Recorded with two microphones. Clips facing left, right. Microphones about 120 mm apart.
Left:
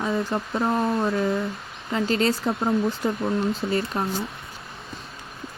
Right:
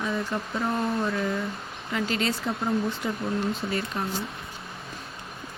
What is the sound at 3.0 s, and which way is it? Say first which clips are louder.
Speech: left 5 dB; 45° left (ahead or behind).